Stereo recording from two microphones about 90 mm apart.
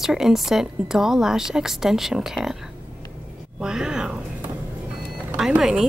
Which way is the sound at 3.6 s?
10° right (ahead or behind).